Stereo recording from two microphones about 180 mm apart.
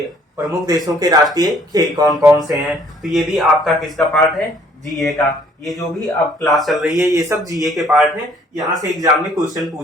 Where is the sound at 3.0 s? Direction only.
Centre (ahead or behind).